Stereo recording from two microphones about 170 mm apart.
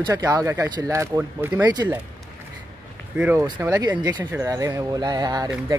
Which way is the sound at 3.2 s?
10° right (ahead or behind).